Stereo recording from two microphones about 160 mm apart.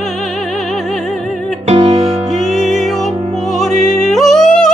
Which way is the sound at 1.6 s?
40° right (ahead or behind).